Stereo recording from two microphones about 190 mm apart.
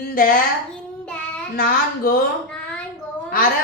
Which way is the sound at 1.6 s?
50° left (ahead or behind).